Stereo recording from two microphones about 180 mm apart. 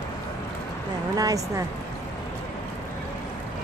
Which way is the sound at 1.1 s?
20° right (ahead or behind).